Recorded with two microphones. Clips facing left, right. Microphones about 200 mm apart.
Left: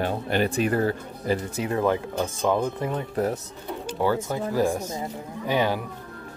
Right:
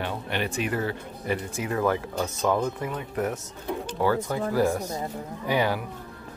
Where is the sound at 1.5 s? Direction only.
25° left (ahead or behind).